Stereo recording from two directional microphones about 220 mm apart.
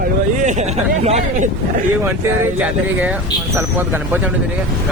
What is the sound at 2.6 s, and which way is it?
Speech, 5° right (ahead or behind).